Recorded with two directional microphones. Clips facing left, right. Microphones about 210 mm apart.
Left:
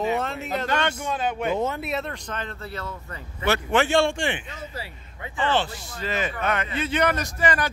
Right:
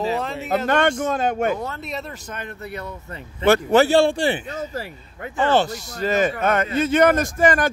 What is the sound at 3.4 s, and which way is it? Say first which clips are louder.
A man's voice: right 7 dB; 40° right (ahead or behind).